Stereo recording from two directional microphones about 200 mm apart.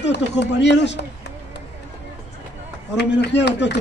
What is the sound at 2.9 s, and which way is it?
Speech, 60° left (ahead or behind).